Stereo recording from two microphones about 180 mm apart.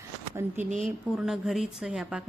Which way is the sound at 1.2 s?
Centre (ahead or behind).